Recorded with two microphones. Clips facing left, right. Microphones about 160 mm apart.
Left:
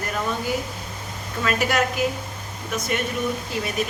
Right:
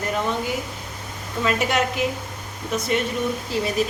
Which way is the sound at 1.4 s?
25° right (ahead or behind).